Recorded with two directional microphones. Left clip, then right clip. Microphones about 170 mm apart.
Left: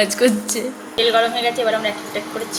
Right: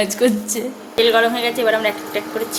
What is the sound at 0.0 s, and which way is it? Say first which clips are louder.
A woman's voice: left 1 dB; 25° right (ahead or behind).